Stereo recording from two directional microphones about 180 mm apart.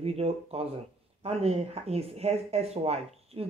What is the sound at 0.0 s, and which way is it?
Speech, 35° right (ahead or behind).